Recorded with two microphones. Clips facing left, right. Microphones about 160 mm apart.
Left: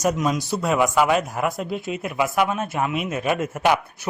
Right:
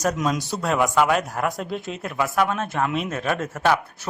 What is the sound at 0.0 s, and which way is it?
Speech, 5° left (ahead or behind).